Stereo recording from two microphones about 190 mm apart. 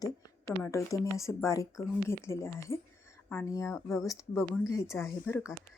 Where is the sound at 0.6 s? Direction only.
15° left (ahead or behind).